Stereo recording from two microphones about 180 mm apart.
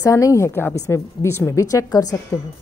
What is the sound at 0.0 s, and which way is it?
A woman's voice, 15° left (ahead or behind).